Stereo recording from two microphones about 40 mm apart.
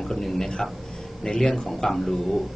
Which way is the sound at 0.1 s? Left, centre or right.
Centre.